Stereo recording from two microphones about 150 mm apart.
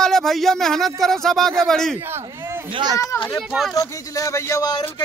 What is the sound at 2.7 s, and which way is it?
Speech, 30° right (ahead or behind).